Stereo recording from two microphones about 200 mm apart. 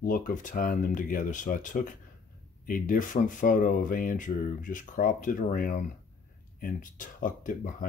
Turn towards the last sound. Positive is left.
turn(degrees=40)  # may be behind; listen again after turning